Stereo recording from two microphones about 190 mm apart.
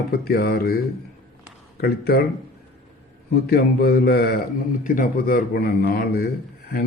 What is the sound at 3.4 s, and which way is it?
A man's voice, 55° left (ahead or behind).